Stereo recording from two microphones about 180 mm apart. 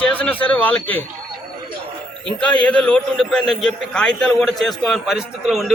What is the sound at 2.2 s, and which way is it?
A man's voice, 5° left (ahead or behind).